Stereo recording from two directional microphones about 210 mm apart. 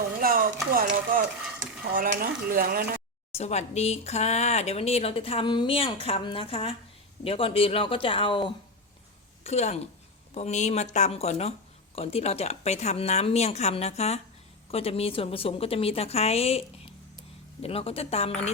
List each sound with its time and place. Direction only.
0.2 s speech: 45° right (ahead or behind)
1.8 s stir: 55° right (ahead or behind)
2.0 s speech: 40° right (ahead or behind)
3.3 s a woman's voice: 30° left (ahead or behind)